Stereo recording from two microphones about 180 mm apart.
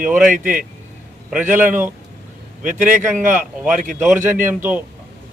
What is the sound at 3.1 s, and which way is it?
Speech, 45° right (ahead or behind).